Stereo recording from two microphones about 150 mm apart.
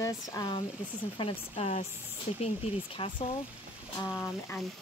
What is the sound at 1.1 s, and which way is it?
Speech, 40° left (ahead or behind).